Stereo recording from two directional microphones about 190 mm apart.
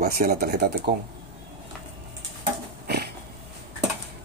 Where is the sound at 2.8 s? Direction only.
60° right (ahead or behind).